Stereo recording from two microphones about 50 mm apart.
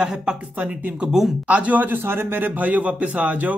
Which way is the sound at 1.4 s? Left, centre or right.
Right.